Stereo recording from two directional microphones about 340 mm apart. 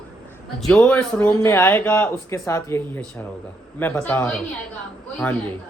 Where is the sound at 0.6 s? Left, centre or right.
Centre.